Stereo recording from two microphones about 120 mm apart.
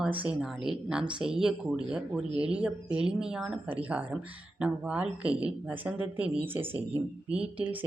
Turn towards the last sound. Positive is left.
turn(degrees=-10)  # may be behind; listen again after turning